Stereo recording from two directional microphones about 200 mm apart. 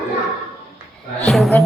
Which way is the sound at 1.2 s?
Centre (ahead or behind).